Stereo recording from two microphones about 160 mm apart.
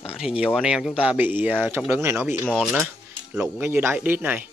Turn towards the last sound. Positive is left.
turn(degrees=-10)  # may be behind; listen again after turning